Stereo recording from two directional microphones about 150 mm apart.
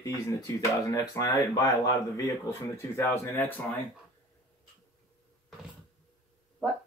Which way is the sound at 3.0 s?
15° left (ahead or behind).